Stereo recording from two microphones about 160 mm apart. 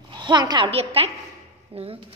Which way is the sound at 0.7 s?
40° right (ahead or behind).